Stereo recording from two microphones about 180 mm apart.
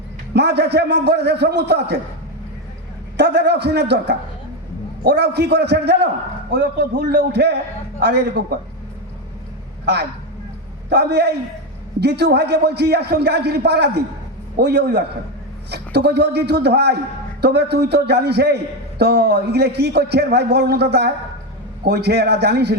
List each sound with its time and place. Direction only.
0.3 s a man's voice: 65° right (ahead or behind)
3.2 s a man's voice: 65° right (ahead or behind)
9.8 s a man's voice: 65° right (ahead or behind)